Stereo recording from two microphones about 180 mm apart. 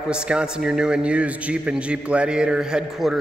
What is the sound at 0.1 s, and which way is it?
A man's voice, 5° right (ahead or behind).